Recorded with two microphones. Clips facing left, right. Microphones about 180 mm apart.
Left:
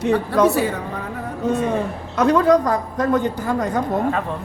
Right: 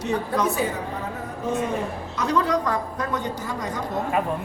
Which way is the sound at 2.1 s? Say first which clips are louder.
Left 8 dB; 50° left (ahead or behind).